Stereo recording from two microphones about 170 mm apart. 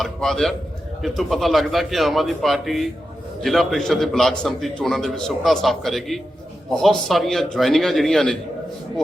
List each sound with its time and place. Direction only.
0.0 s a man's voice: centre (ahead or behind)